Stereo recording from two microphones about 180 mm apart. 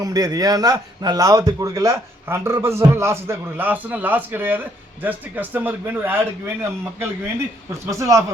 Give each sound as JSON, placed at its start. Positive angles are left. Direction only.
{"t": 0.0, "sound": "a man's voice", "side_deg": -20}